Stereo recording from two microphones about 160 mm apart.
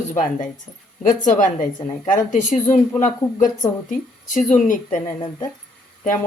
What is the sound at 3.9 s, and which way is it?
Speech, 55° left (ahead or behind).